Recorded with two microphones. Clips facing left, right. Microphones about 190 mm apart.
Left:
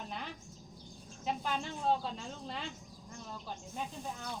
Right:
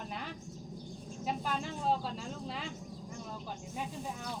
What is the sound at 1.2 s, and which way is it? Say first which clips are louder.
Speech: even; centre (ahead or behind).